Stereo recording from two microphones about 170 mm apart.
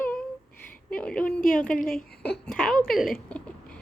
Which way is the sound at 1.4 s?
55° left (ahead or behind).